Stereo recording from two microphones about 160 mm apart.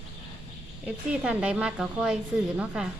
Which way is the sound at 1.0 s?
10° right (ahead or behind).